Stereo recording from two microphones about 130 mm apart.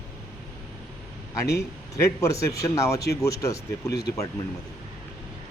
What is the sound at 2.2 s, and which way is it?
Speech, 25° left (ahead or behind).